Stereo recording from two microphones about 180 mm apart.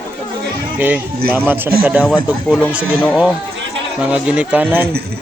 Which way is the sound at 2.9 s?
10° left (ahead or behind).